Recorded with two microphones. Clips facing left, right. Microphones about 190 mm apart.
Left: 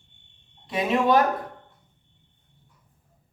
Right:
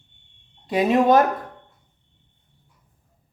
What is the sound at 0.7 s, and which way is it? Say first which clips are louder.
Speech: right 5 dB; 40° right (ahead or behind).